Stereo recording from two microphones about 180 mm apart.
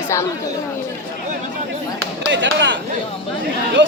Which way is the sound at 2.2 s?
85° right.